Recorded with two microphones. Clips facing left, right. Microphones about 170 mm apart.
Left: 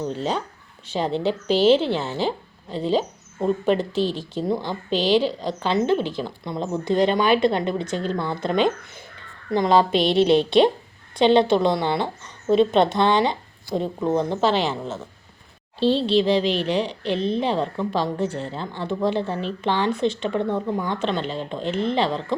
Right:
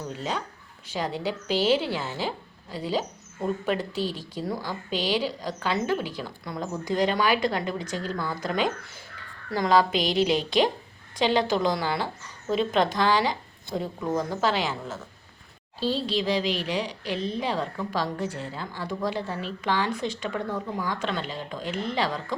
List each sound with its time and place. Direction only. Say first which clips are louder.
0.0 s a woman's voice: left 6 dB; 30° left (ahead or behind)